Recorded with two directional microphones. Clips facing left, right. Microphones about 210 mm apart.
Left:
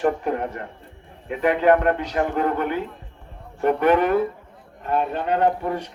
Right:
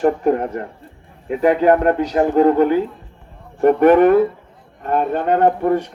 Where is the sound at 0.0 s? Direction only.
40° right (ahead or behind).